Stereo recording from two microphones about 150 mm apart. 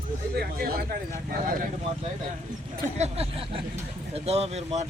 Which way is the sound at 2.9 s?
45° right (ahead or behind).